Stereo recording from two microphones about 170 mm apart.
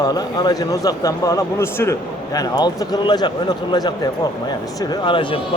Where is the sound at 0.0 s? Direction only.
20° left (ahead or behind).